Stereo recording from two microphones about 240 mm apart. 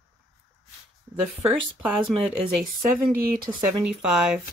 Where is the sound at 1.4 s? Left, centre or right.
Centre.